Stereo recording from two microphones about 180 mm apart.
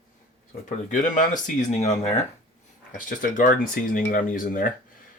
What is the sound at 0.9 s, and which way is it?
Speech, 45° left (ahead or behind).